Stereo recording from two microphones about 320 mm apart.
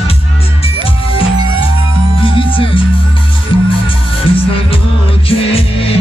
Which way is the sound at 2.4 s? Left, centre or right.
Centre.